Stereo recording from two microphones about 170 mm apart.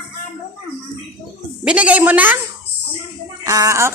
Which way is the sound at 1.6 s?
5° right (ahead or behind).